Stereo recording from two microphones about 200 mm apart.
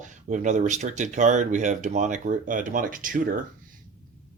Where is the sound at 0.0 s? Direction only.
40° right (ahead or behind).